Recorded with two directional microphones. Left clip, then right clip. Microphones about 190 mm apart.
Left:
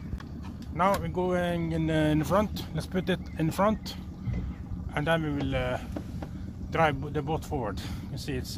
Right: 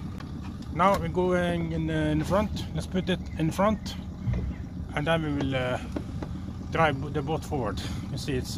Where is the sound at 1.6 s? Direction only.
40° left (ahead or behind).